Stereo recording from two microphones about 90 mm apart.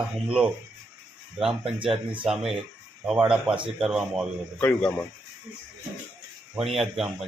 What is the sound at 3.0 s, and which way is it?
Speech, 10° right (ahead or behind).